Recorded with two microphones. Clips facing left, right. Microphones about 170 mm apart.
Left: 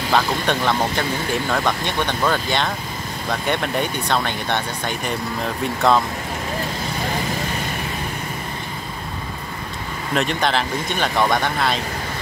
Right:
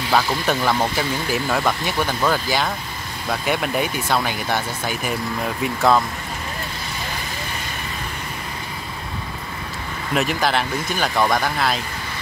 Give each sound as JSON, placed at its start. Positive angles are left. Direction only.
{"t": 0.1, "sound": "speech", "side_deg": -5}
{"t": 10.1, "sound": "speech", "side_deg": -5}